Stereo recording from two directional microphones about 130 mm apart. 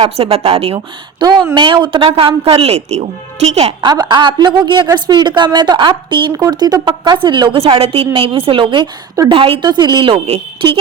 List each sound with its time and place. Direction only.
0.0 s speech: 50° right (ahead or behind)
1.2 s a woman's voice: 35° right (ahead or behind); by 3.8 s 55° right (ahead or behind)
3.8 s a woman's voice: 35° right (ahead or behind)